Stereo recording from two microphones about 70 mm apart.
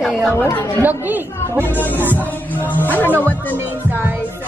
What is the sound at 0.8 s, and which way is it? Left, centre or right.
Speech, right.